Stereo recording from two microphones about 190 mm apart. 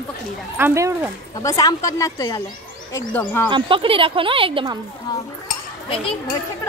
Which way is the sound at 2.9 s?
10° left (ahead or behind).